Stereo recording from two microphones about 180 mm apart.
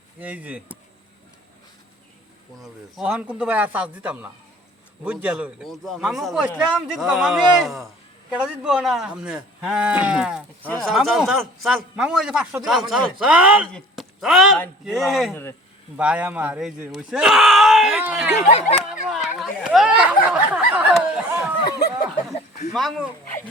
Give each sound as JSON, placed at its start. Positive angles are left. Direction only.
{"t": 0.2, "sound": "speech", "side_deg": -10}
{"t": 2.6, "sound": "a man's voice", "side_deg": -5}
{"t": 18.3, "sound": "speech", "side_deg": 40}
{"t": 18.9, "sound": "a sound", "side_deg": 0}
{"t": 22.7, "sound": "a man's voice", "side_deg": 0}